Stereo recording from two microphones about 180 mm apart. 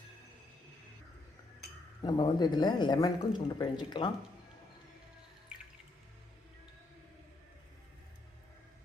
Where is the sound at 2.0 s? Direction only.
25° left (ahead or behind).